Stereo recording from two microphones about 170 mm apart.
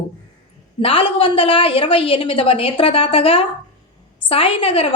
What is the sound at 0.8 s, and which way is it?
A woman's voice, 30° left (ahead or behind).